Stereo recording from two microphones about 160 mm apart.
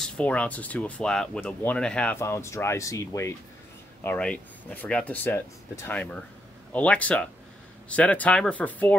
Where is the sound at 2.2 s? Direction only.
15° left (ahead or behind).